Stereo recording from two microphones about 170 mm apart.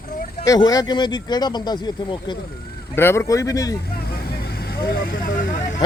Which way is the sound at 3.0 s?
15° left (ahead or behind).